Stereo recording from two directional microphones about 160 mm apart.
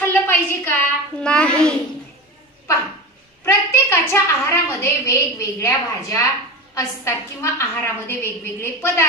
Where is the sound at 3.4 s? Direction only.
15° left (ahead or behind).